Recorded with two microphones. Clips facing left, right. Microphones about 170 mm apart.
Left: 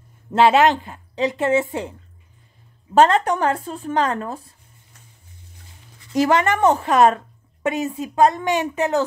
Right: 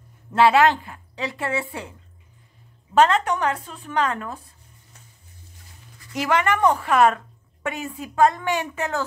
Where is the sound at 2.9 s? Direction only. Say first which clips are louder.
Left 3 dB; 35° left (ahead or behind).